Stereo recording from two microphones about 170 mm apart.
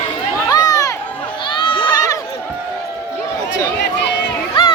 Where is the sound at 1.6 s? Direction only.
30° left (ahead or behind).